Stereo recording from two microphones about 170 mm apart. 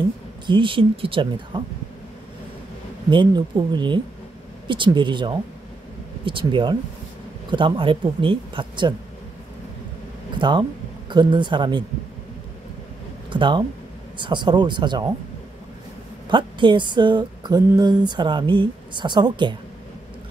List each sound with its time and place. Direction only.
0.5 s speech: 30° right (ahead or behind)
3.1 s speech: 25° right (ahead or behind)
10.4 s speech: 25° right (ahead or behind)
13.3 s speech: 30° right (ahead or behind)
16.3 s speech: 30° right (ahead or behind)